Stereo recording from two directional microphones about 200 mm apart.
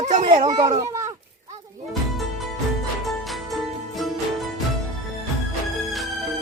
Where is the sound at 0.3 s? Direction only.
20° right (ahead or behind).